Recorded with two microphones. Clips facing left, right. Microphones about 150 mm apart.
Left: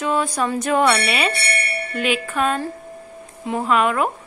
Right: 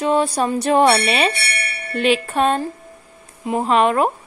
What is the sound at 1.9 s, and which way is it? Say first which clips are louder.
Wind chime: right 5 dB; 30° right (ahead or behind).